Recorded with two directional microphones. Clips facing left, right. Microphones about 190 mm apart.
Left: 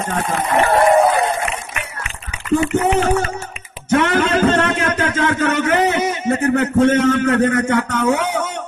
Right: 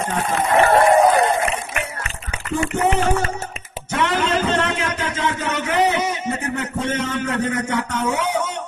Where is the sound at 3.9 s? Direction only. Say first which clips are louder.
Left 5 dB; 50° left (ahead or behind).